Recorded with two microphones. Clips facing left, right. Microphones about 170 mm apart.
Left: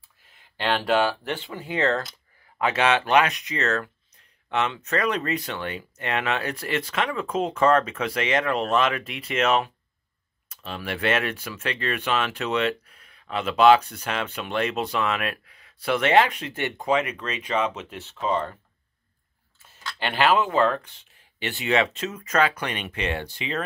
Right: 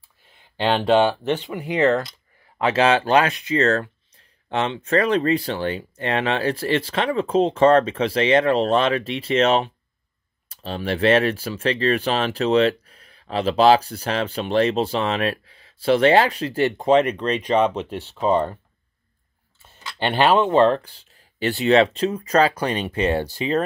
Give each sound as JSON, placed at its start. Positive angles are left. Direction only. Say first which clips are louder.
{"t": 0.6, "sound": "speech", "louder": "right 5 dB", "side_deg": -25}
{"t": 2.6, "sound": "speech", "louder": "right 4 dB", "side_deg": -30}
{"t": 20.0, "sound": "speech", "louder": "right 4 dB", "side_deg": -30}